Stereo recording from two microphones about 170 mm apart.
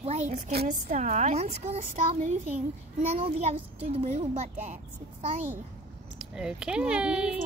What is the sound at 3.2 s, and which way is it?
Speech, 35° right (ahead or behind).